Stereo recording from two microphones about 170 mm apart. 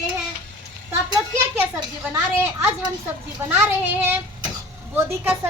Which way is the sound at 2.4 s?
15° right (ahead or behind).